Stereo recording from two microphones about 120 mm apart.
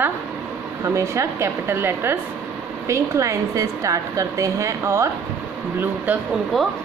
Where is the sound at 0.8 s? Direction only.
25° right (ahead or behind).